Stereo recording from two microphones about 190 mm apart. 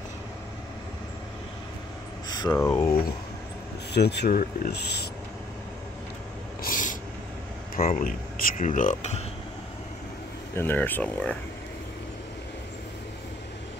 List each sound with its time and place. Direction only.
2.2 s speech: 20° left (ahead or behind)
3.9 s speech: 60° left (ahead or behind)
6.6 s a sound: 45° left (ahead or behind)
7.7 s speech: 50° left (ahead or behind)
10.6 s speech: 10° left (ahead or behind)